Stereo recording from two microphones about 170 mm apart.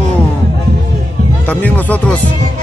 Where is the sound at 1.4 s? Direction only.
10° left (ahead or behind).